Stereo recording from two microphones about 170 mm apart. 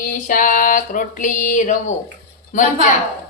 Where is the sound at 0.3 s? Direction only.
50° left (ahead or behind).